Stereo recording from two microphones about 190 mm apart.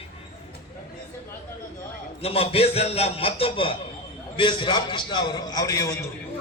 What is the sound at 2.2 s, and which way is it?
A man's voice, 30° left (ahead or behind).